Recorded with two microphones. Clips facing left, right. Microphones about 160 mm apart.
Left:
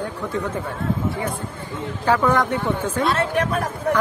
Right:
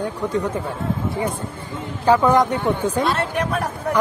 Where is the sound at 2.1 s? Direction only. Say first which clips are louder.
Right 3 dB; 15° right (ahead or behind).